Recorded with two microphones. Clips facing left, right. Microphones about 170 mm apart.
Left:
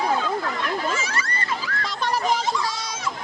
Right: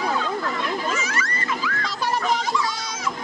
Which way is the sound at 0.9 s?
30° left (ahead or behind).